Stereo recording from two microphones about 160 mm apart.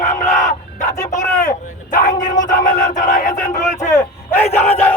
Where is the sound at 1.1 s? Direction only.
50° left (ahead or behind).